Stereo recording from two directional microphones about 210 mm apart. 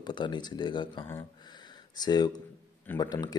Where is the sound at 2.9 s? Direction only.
20° left (ahead or behind).